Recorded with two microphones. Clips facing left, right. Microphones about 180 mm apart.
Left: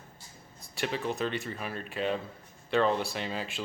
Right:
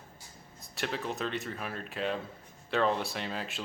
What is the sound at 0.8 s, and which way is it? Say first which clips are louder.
Speech: left 3 dB; centre (ahead or behind).